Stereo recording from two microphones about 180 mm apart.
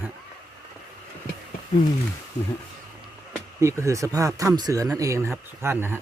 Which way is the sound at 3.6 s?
15° right (ahead or behind).